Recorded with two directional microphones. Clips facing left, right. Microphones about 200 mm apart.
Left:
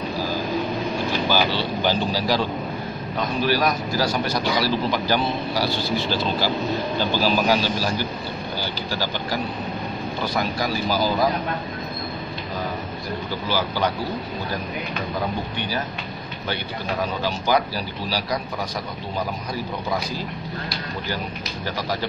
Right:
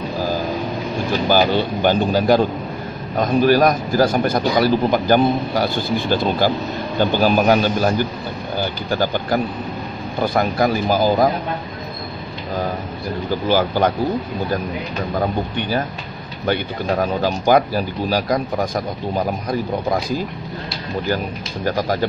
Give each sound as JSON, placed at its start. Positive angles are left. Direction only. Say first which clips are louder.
{"t": 1.3, "sound": "a man's voice", "louder": "right 8 dB", "side_deg": -50}
{"t": 13.5, "sound": "a man's voice", "louder": "right 7 dB", "side_deg": -50}
{"t": 16.4, "sound": "a man's voice", "louder": "right 8 dB", "side_deg": -50}
{"t": 21.6, "sound": "a man's voice", "louder": "right 8 dB", "side_deg": -50}